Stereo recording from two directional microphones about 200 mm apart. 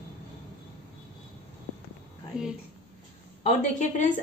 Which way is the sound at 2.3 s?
5° right (ahead or behind).